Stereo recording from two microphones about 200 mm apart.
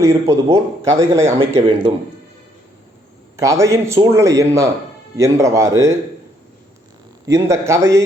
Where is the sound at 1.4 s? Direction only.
25° right (ahead or behind).